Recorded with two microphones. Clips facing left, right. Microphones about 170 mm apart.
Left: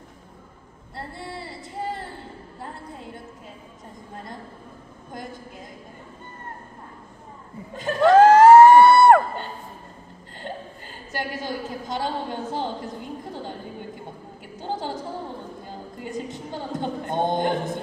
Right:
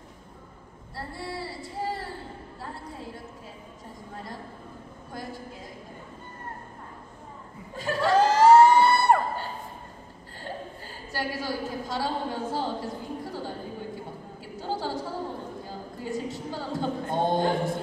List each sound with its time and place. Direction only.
0.9 s child singing: 20° left (ahead or behind)
5.1 s a woman's voice: 20° left (ahead or behind)
7.7 s chuckle: 20° left (ahead or behind)
8.0 s crowd: 55° left (ahead or behind)
11.1 s a sound: 20° left (ahead or behind)
14.6 s a sound: 20° left (ahead or behind)